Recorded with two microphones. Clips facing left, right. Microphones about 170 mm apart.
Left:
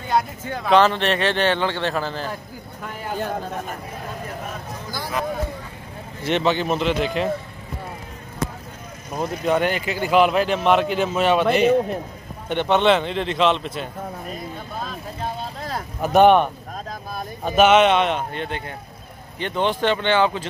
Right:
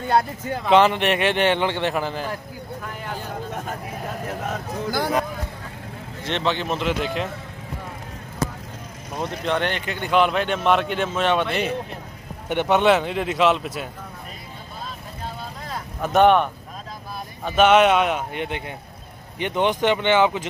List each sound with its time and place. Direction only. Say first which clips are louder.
0.7 s a man's voice: even; 15° right (ahead or behind)
4.5 s speech: right 5 dB; 60° right (ahead or behind)
6.2 s speech: left 4 dB; 5° left (ahead or behind)
9.1 s speech: left 3 dB; 5° left (ahead or behind)
12.4 s a man's voice: even; 10° right (ahead or behind)
16.0 s speech: left 2 dB; 10° left (ahead or behind)
17.5 s speech: left 1 dB; 5° left (ahead or behind)
19.4 s a man's voice: right 1 dB; 15° right (ahead or behind)